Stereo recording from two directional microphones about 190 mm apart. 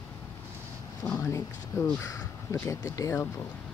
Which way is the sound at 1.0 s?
15° left (ahead or behind).